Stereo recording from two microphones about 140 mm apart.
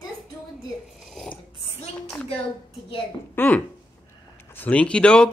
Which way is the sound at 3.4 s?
10° left (ahead or behind).